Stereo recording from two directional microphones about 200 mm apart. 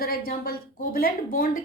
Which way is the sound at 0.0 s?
45° left (ahead or behind).